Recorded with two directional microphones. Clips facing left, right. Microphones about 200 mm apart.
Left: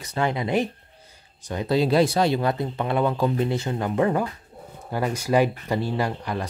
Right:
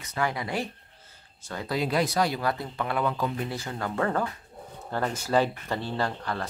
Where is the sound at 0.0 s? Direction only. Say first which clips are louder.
Left 5 dB; 30° left (ahead or behind).